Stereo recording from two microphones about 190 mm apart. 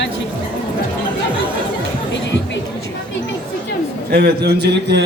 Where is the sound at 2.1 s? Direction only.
70° left (ahead or behind).